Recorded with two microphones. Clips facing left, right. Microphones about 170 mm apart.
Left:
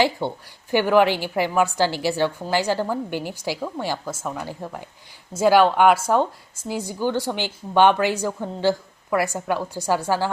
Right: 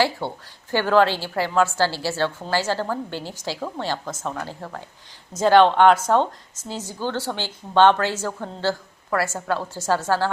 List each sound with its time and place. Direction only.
0.2 s speech: 15° left (ahead or behind)